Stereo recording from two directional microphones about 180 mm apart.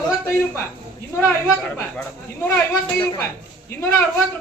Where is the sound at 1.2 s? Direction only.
10° left (ahead or behind).